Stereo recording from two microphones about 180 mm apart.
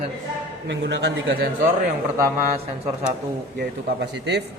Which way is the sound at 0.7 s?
75° right (ahead or behind).